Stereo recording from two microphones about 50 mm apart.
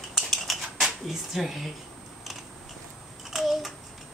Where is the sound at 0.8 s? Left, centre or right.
Centre.